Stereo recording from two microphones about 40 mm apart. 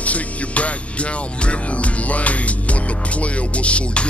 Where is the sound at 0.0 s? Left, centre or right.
Left.